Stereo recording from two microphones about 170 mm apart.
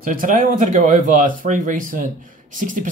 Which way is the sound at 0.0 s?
55° right (ahead or behind).